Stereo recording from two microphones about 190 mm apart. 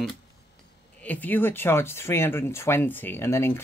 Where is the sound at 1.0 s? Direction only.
10° left (ahead or behind).